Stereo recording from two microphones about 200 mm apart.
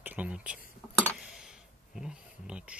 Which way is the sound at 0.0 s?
10° right (ahead or behind).